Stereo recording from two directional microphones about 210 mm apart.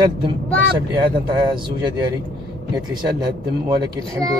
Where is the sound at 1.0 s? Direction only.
20° right (ahead or behind).